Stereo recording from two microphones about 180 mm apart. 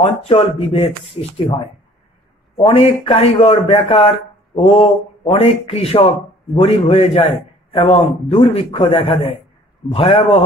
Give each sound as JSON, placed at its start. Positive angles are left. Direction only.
{"t": 0.3, "sound": "speech", "side_deg": 30}
{"t": 2.6, "sound": "speech", "side_deg": 30}